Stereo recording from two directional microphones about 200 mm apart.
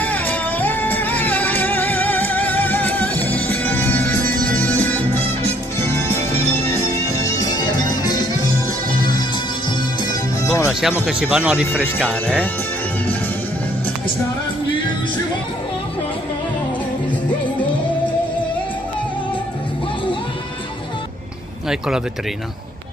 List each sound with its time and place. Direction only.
0.0 s music: 10° left (ahead or behind)
10.4 s music: 15° left (ahead or behind)
10.7 s speech: 5° right (ahead or behind)
21.6 s speech: 5° right (ahead or behind)